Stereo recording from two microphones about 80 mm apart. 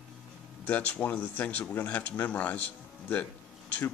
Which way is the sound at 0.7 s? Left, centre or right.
Centre.